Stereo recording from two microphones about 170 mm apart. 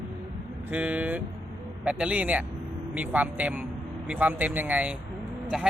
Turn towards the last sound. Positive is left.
turn(degrees=-5)  # may be behind; listen again after turning